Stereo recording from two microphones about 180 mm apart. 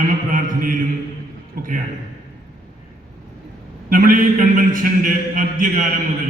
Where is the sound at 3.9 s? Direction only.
50° right (ahead or behind).